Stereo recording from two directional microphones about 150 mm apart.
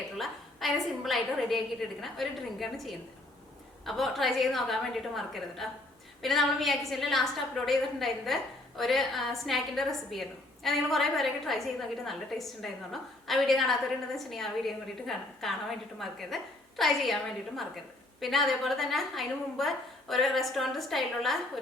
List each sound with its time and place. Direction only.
0.2 s a woman's voice: centre (ahead or behind)